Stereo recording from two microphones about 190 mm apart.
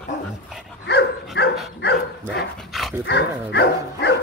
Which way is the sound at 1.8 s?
60° left (ahead or behind).